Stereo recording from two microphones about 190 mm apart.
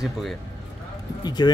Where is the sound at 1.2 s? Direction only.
20° left (ahead or behind).